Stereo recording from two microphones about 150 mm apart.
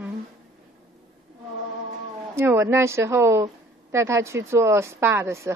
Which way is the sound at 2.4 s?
15° right (ahead or behind).